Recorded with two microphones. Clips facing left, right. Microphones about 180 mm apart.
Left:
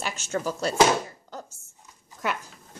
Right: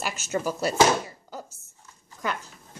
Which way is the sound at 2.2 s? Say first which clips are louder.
Left 1 dB; 5° left (ahead or behind).